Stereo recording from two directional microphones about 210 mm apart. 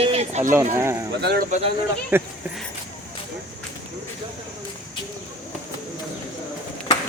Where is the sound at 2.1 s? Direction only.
10° right (ahead or behind).